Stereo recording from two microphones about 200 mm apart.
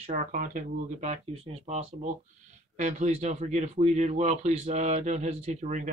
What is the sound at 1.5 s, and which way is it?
Speech, 30° right (ahead or behind).